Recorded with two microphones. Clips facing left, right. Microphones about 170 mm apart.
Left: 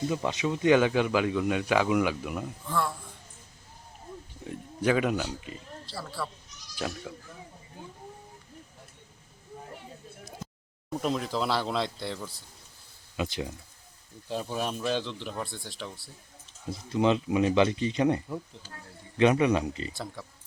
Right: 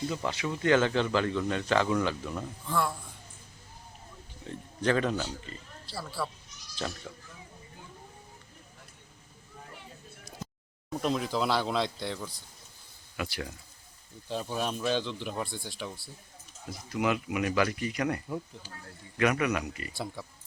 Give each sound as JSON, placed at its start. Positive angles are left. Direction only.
{"t": 0.1, "sound": "speech", "side_deg": 20}
{"t": 2.6, "sound": "speech", "side_deg": 0}
{"t": 4.4, "sound": "speech", "side_deg": 10}
{"t": 5.8, "sound": "speech", "side_deg": 0}
{"t": 10.4, "sound": "speech", "side_deg": 5}
{"t": 13.1, "sound": "speech", "side_deg": 20}
{"t": 14.3, "sound": "speech", "side_deg": 5}
{"t": 16.6, "sound": "speech", "side_deg": 25}